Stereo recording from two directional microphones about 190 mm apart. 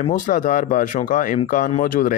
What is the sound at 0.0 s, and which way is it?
Speech, 45° left (ahead or behind).